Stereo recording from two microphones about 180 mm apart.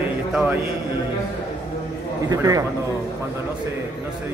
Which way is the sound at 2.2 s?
20° right (ahead or behind).